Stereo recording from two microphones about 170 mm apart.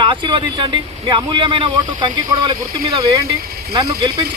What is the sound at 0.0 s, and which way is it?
A man's voice, 30° right (ahead or behind).